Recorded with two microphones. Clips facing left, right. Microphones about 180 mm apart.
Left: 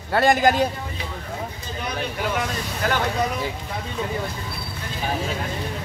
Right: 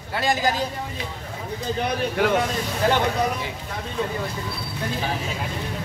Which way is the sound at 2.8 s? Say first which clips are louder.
Right 3 dB; 30° right (ahead or behind).